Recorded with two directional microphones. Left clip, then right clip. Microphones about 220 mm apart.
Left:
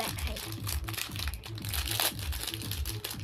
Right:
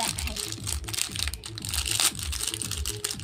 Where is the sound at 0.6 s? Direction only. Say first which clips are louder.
Right 4 dB; centre (ahead or behind).